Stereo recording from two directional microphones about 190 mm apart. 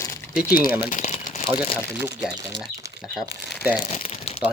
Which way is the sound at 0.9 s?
40° left (ahead or behind).